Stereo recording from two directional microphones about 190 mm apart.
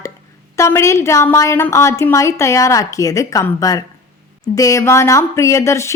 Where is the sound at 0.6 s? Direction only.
15° left (ahead or behind).